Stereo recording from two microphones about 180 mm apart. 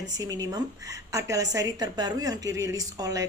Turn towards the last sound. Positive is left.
turn(degrees=-20)  # may be behind; listen again after turning